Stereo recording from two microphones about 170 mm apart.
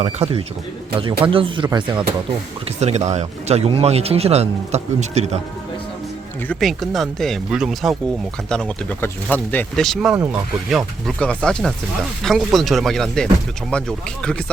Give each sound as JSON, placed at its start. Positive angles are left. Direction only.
{"t": 0.0, "sound": "speech", "side_deg": -35}
{"t": 2.8, "sound": "speech", "side_deg": -40}
{"t": 6.5, "sound": "speech", "side_deg": 0}